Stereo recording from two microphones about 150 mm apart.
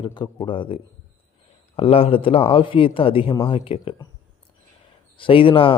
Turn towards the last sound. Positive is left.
turn(degrees=35)  # may be behind; listen again after turning